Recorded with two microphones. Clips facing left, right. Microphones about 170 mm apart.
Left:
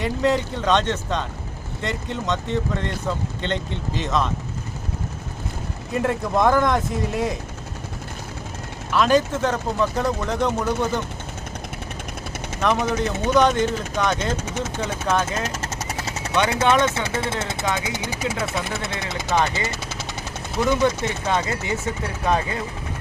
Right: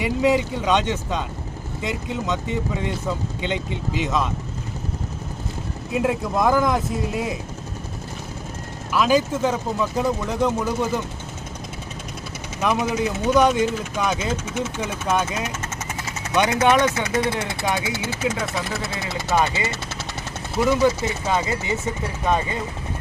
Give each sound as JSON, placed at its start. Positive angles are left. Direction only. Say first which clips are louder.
{"t": 0.0, "sound": "speech", "louder": "right 2 dB", "side_deg": -10}
{"t": 5.9, "sound": "speech", "louder": "even", "side_deg": -5}
{"t": 8.9, "sound": "speech", "louder": "left 1 dB", "side_deg": -5}
{"t": 12.6, "sound": "speech", "louder": "even", "side_deg": -10}
{"t": 14.4, "sound": "speech", "louder": "right 1 dB", "side_deg": 40}
{"t": 14.8, "sound": "speech", "louder": "left 1 dB", "side_deg": -5}
{"t": 16.8, "sound": "speech", "louder": "right 2 dB", "side_deg": 30}